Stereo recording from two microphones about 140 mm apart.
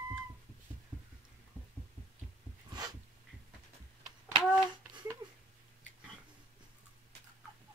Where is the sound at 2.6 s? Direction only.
30° right (ahead or behind).